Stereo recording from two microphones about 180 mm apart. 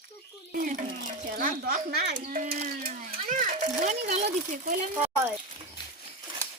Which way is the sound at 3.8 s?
40° right (ahead or behind).